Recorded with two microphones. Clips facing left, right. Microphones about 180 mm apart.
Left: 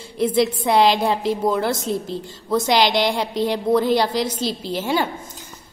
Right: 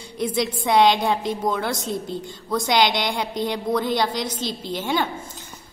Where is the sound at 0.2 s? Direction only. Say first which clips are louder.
Left 5 dB; 5° left (ahead or behind).